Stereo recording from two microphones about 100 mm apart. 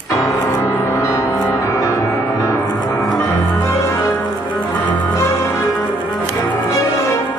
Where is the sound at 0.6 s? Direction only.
30° left (ahead or behind).